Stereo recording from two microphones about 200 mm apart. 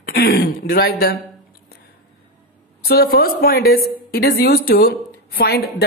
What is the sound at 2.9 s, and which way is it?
A woman's voice, 50° left (ahead or behind).